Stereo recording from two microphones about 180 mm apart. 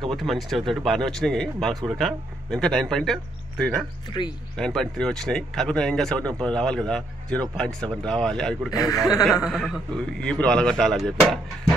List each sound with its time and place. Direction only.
0.1 s speech: centre (ahead or behind)
8.7 s a man's voice: 20° left (ahead or behind)
9.2 s speech: centre (ahead or behind)